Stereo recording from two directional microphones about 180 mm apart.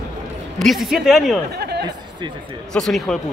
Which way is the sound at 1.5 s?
65° right (ahead or behind).